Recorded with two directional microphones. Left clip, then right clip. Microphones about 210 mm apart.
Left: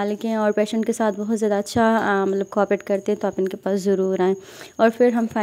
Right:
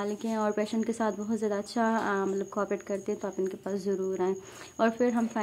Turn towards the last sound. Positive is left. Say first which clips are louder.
# left 10 dB
turn(degrees=30)  # may be behind; listen again after turning